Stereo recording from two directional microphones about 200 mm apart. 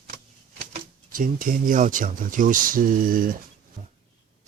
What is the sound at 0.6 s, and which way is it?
Speech, 35° right (ahead or behind).